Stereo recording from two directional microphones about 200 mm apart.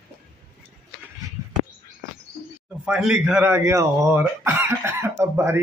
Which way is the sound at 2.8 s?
5° right (ahead or behind).